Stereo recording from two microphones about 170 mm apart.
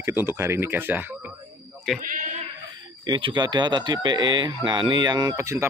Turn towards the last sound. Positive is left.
turn(degrees=-15)  # may be behind; listen again after turning